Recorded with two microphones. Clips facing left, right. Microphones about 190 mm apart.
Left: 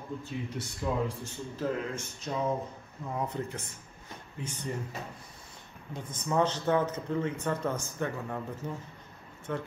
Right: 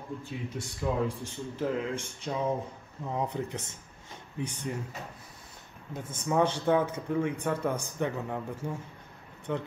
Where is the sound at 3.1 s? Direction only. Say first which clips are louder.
Right 2 dB; 15° right (ahead or behind).